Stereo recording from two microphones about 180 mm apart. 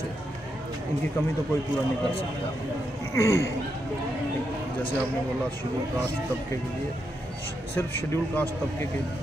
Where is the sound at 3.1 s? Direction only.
15° left (ahead or behind).